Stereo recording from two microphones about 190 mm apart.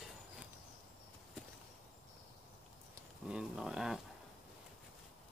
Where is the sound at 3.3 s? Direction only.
5° right (ahead or behind).